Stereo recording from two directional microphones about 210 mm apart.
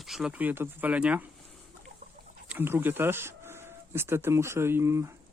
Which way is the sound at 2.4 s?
10° right (ahead or behind).